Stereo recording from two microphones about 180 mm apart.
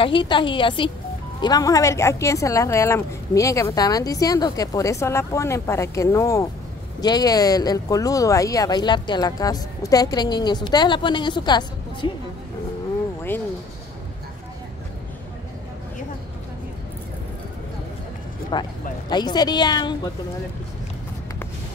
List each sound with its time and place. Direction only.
0.0 s speech: 25° left (ahead or behind)
18.5 s speech: 25° left (ahead or behind)